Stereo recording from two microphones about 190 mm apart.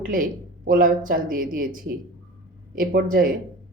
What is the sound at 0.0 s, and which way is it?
A woman's voice, 45° right (ahead or behind).